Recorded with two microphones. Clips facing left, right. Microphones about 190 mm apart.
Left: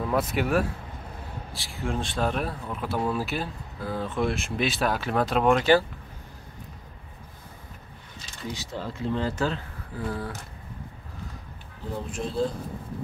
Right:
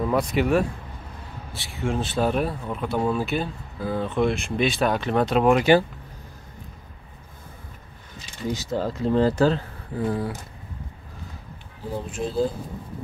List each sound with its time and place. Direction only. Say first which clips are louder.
0.0 s speech: right 4 dB; centre (ahead or behind); by 5.9 s 15° right (ahead or behind)
8.5 s speech: right 8 dB; 40° right (ahead or behind)
9.9 s speech: right 6 dB; 20° right (ahead or behind)
12.1 s speech: right 3 dB; centre (ahead or behind)